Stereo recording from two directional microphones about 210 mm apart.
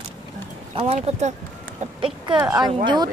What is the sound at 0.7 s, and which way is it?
Speech, 30° right (ahead or behind).